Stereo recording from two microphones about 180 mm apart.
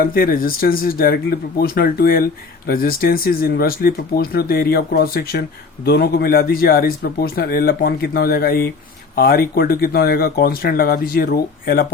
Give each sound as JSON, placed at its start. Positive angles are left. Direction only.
{"t": 0.0, "sound": "speech", "side_deg": 55}